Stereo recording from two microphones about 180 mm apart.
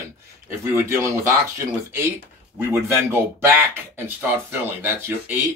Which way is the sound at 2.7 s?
15° right (ahead or behind).